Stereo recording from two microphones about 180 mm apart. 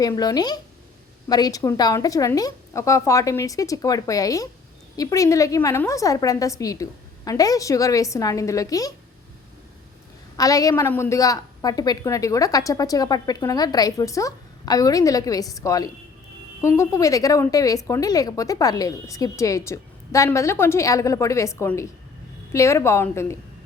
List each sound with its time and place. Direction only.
0.0 s a woman's voice: 20° left (ahead or behind)
10.3 s a woman's voice: 20° left (ahead or behind)